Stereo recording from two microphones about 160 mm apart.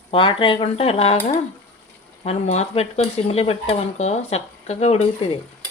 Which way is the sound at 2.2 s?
40° left (ahead or behind).